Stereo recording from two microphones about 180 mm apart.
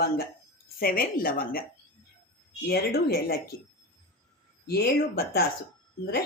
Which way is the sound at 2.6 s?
60° left (ahead or behind).